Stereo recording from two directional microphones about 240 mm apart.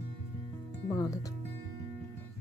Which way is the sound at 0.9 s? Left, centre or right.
Centre.